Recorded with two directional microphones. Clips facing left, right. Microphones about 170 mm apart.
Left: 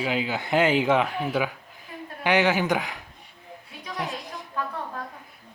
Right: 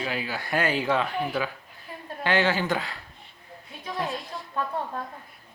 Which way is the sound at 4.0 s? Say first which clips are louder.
Right 1 dB; 15° left (ahead or behind).